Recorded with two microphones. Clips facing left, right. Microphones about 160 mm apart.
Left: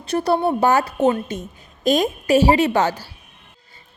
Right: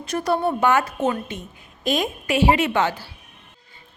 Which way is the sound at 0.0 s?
30° left (ahead or behind).